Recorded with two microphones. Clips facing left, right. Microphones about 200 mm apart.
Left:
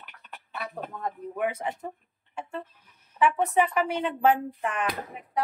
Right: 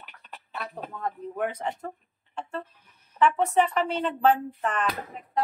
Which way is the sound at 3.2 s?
10° left (ahead or behind).